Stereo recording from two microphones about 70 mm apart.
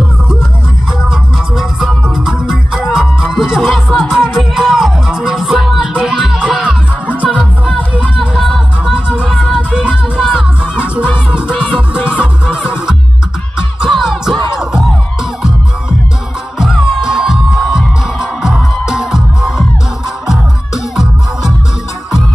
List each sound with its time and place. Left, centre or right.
1.0 s music: centre
16.5 s music: centre